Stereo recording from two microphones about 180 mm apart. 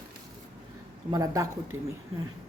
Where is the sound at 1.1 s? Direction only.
20° right (ahead or behind).